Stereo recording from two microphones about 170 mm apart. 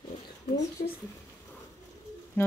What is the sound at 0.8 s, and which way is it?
Speech, 55° left (ahead or behind).